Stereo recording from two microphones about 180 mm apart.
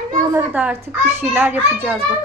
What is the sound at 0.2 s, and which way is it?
A child's voice, 15° right (ahead or behind).